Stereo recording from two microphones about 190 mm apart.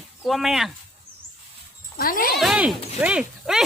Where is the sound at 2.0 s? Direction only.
50° left (ahead or behind).